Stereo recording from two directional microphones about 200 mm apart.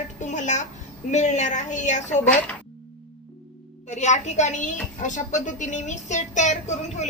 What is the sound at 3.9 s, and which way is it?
A woman's voice, 35° left (ahead or behind).